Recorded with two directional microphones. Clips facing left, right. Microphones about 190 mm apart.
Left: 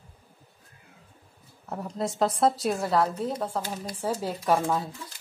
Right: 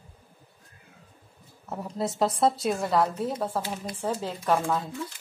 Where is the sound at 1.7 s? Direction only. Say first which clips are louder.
Even; centre (ahead or behind).